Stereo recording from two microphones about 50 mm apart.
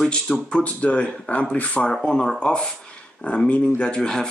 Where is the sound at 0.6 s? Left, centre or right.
Left.